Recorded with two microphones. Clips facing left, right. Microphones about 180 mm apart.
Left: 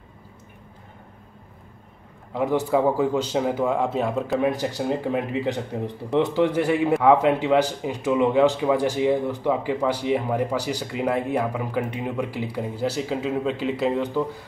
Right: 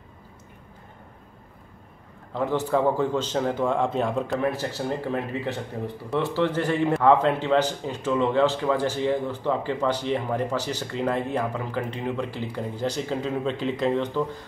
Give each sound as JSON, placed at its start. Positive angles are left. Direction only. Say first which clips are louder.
{"t": 2.3, "sound": "a man's voice", "louder": "left 2 dB", "side_deg": 10}
{"t": 4.4, "sound": "a man's voice", "louder": "left 3 dB", "side_deg": 15}